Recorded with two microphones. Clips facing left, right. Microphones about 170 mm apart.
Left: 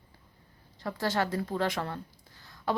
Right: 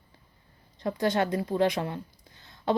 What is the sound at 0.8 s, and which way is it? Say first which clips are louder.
Speech: right 4 dB; 20° right (ahead or behind).